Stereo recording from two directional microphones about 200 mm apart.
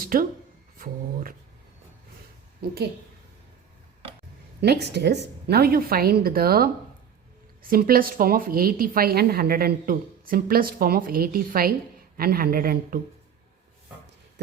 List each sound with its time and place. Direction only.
0.0 s a woman's voice: 45° right (ahead or behind)
4.6 s a woman's voice: 55° right (ahead or behind)